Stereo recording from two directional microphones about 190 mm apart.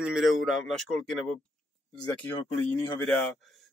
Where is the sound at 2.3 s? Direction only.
20° left (ahead or behind).